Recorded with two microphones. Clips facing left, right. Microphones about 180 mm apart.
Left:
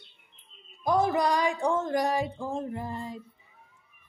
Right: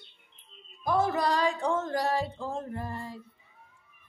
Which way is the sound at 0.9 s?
15° left (ahead or behind).